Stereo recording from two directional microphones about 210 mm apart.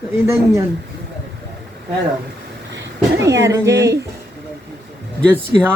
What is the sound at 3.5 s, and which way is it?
Speech, 15° right (ahead or behind).